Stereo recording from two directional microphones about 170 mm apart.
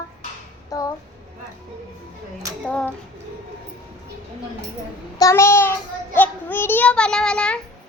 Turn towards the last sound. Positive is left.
turn(degrees=5)  # may be behind; listen again after turning